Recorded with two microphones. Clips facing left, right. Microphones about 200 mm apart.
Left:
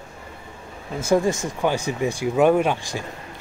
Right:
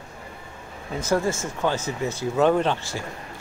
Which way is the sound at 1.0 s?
15° left (ahead or behind).